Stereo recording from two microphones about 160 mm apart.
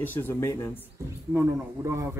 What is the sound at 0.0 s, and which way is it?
Speech, 10° left (ahead or behind).